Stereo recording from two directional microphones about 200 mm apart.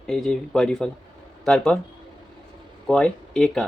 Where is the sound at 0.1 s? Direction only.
Centre (ahead or behind).